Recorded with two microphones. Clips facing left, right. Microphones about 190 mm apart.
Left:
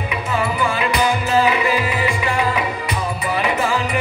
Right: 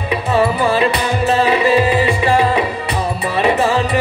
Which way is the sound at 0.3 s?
30° right (ahead or behind).